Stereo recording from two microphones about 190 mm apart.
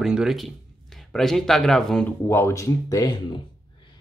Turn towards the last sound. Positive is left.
turn(degrees=20)  # may be behind; listen again after turning